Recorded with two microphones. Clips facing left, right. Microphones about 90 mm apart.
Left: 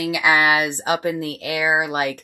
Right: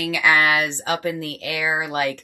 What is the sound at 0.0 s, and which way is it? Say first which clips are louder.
Speech: left 1 dB; 15° left (ahead or behind).